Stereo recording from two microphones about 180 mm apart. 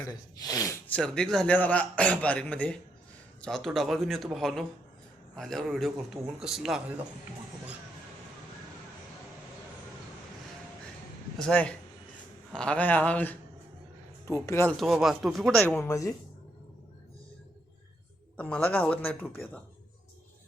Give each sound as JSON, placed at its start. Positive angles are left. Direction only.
{"t": 0.0, "sound": "speech", "side_deg": 20}
{"t": 0.9, "sound": "a man's voice", "side_deg": 5}
{"t": 11.3, "sound": "a man's voice", "side_deg": 5}
{"t": 14.8, "sound": "a man's voice", "side_deg": 0}
{"t": 15.6, "sound": "a man's voice", "side_deg": 15}
{"t": 18.3, "sound": "a man's voice", "side_deg": 5}